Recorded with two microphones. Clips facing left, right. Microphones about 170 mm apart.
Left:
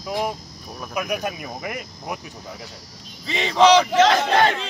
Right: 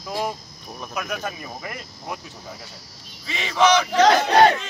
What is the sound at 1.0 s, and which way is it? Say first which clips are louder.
Speech: left 4 dB; 15° left (ahead or behind).